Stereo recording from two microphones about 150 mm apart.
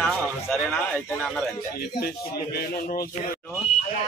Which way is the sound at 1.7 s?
90° left.